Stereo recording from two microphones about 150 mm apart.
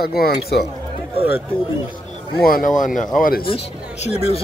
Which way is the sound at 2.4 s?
70° left (ahead or behind).